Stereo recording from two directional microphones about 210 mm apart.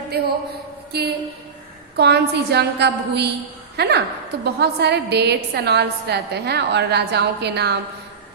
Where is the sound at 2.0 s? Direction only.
50° right (ahead or behind).